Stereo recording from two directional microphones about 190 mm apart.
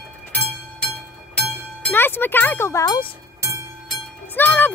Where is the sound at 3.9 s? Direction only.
10° left (ahead or behind).